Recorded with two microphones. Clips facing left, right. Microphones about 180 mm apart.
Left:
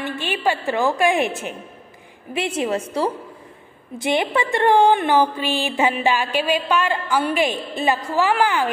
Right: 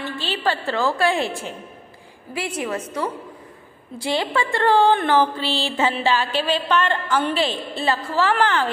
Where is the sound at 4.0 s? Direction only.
20° left (ahead or behind).